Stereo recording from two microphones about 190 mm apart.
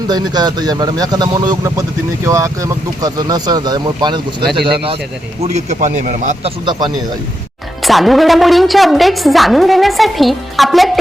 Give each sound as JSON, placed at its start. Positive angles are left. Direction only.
{"t": 0.1, "sound": "speech", "side_deg": -20}
{"t": 5.4, "sound": "a man's voice", "side_deg": -35}
{"t": 6.7, "sound": "speech", "side_deg": -25}
{"t": 7.8, "sound": "a woman's voice", "side_deg": 0}